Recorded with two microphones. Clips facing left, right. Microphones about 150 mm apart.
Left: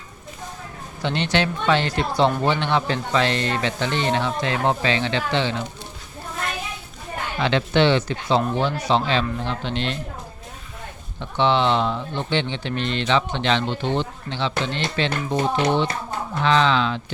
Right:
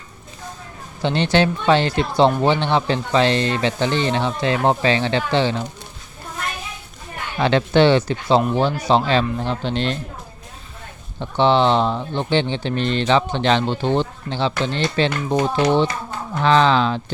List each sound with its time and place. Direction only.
1.0 s speech: 35° right (ahead or behind)
7.3 s speech: 40° right (ahead or behind)
11.2 s speech: 35° right (ahead or behind)
16.4 s speech: 40° right (ahead or behind)